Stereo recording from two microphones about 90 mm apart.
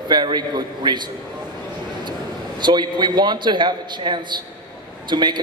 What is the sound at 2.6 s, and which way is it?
A man's voice, 55° right (ahead or behind).